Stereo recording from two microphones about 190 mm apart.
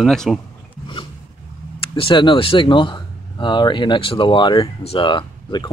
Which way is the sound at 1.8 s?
30° left (ahead or behind).